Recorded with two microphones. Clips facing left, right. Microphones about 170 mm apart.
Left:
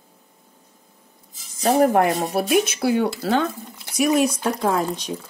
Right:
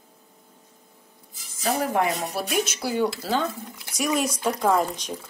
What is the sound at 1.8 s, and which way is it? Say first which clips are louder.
Speech: left 7 dB; 50° left (ahead or behind).